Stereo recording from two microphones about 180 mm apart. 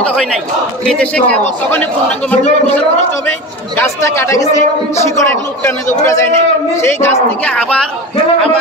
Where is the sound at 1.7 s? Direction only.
10° left (ahead or behind).